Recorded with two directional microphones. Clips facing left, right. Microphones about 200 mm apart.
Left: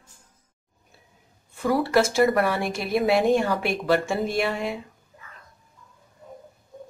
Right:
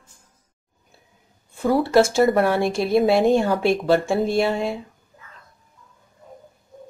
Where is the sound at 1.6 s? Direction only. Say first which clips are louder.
Right 4 dB; 25° right (ahead or behind).